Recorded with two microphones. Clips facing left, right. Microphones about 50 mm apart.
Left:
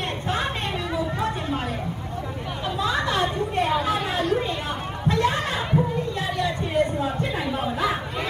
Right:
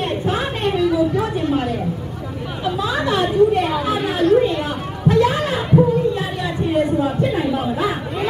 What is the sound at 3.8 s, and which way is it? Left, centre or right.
Chatter, right.